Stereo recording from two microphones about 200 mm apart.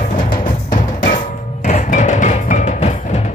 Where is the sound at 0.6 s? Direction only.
40° left (ahead or behind).